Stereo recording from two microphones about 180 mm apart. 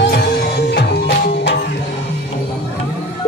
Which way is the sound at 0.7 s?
65° left (ahead or behind).